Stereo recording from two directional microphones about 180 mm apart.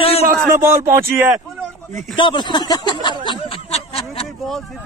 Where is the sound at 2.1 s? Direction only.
25° left (ahead or behind).